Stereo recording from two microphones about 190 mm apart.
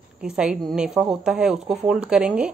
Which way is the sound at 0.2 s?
5° right (ahead or behind).